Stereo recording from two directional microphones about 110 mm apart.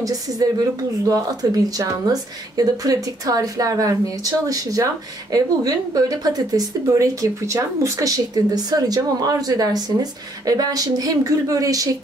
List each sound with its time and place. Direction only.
0.0 s a woman's voice: 35° right (ahead or behind)